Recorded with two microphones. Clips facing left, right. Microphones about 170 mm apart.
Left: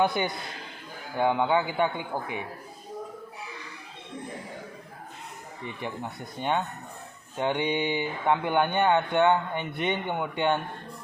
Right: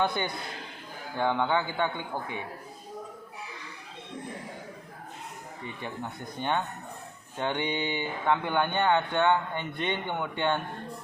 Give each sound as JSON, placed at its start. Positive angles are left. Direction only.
{"t": 0.2, "sound": "speech", "side_deg": 15}
{"t": 5.8, "sound": "speech", "side_deg": 15}